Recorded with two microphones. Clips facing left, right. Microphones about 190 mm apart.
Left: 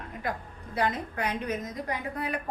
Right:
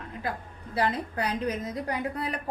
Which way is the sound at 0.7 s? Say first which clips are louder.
Right 1 dB; 35° right (ahead or behind).